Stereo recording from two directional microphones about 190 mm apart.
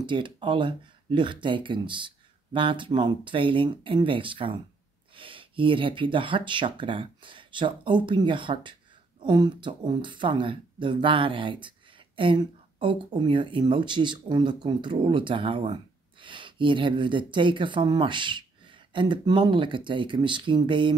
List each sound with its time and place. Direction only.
0.0 s speech: 25° right (ahead or behind)